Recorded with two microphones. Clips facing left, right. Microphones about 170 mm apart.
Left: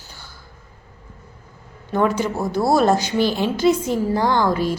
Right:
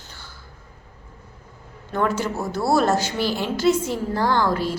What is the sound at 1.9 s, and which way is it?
A woman's voice, 15° left (ahead or behind).